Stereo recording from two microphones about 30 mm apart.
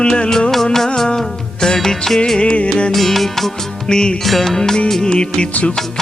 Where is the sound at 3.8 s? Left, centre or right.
Left.